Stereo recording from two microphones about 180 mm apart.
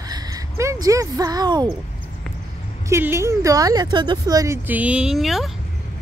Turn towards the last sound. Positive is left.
turn(degrees=0)  # may be behind; listen again after turning